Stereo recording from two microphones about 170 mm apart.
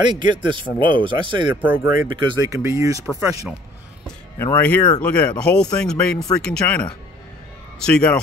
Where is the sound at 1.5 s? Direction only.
10° right (ahead or behind).